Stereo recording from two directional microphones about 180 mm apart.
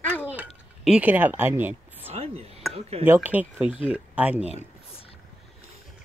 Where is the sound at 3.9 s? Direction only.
5° right (ahead or behind).